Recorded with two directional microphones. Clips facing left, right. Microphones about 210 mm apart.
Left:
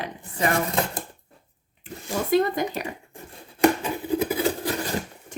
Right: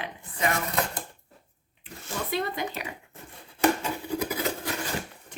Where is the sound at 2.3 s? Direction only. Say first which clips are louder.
Left 10 dB; 45° left (ahead or behind).